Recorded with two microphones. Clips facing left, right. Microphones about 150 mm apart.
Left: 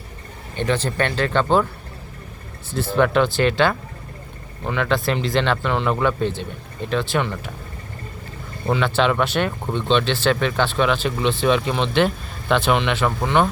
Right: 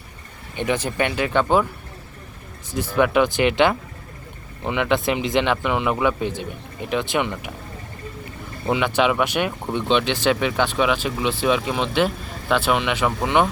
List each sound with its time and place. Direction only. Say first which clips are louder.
0.5 s speech: left 1 dB; 15° right (ahead or behind)
2.6 s speech: left 1 dB; 10° right (ahead or behind)
8.6 s speech: even; 15° right (ahead or behind)